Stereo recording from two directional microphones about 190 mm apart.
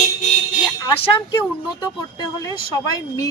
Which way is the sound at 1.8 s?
20° left (ahead or behind).